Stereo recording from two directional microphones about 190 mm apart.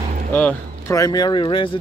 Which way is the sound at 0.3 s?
10° left (ahead or behind).